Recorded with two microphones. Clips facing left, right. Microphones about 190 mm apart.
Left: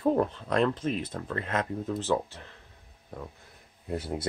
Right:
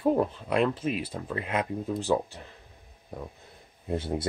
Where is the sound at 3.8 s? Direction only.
25° right (ahead or behind).